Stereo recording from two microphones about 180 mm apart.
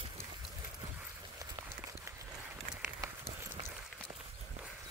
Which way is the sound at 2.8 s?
15° right (ahead or behind).